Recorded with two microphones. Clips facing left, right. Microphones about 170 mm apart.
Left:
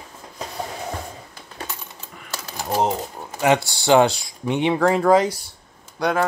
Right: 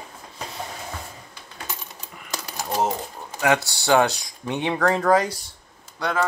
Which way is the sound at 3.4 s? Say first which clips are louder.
Left 3 dB; 20° left (ahead or behind).